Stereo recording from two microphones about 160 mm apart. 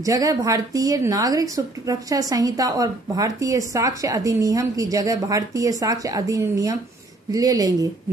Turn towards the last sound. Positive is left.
turn(degrees=-25)  # may be behind; listen again after turning